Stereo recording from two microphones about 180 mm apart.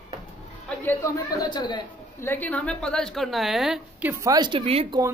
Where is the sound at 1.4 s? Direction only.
25° left (ahead or behind).